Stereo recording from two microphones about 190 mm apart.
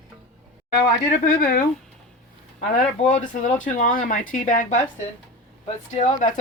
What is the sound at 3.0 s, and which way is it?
Speech, 40° left (ahead or behind).